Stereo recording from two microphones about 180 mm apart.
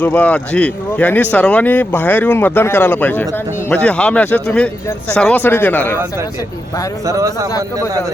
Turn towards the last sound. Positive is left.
turn(degrees=-15)  # may be behind; listen again after turning